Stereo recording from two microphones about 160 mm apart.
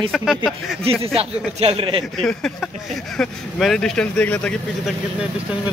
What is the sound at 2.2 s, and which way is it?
Speech, 5° left (ahead or behind).